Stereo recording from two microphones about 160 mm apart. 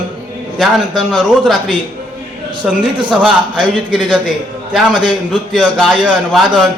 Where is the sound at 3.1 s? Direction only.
Centre (ahead or behind).